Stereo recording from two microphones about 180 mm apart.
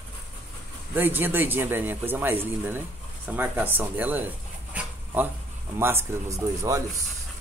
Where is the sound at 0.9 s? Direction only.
10° right (ahead or behind).